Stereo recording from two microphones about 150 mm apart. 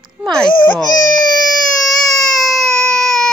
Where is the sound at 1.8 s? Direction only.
Centre (ahead or behind).